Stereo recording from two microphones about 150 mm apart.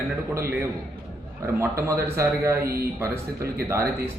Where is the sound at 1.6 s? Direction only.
20° right (ahead or behind).